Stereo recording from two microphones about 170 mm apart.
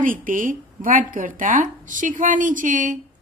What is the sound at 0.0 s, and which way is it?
Speech, 50° right (ahead or behind).